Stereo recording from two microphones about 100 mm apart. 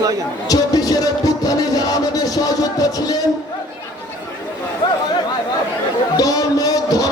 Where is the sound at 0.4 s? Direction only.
40° left (ahead or behind).